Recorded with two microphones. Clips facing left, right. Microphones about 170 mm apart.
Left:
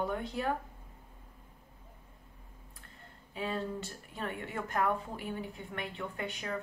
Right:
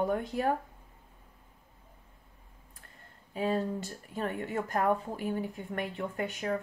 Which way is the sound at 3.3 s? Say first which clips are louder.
Right 5 dB; 40° right (ahead or behind).